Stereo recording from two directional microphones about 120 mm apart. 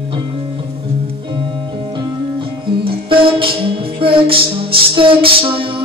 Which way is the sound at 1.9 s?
45° right (ahead or behind).